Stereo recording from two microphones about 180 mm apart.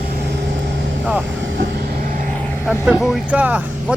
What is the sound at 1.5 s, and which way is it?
Vehicle, 60° right (ahead or behind).